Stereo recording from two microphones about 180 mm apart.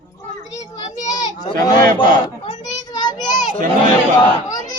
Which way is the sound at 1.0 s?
20° left (ahead or behind).